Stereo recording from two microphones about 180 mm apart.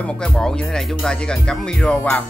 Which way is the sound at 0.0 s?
5° left (ahead or behind).